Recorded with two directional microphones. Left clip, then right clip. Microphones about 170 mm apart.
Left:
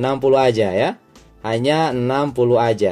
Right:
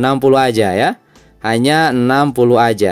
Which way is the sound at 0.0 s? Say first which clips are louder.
Right 3 dB; 40° right (ahead or behind).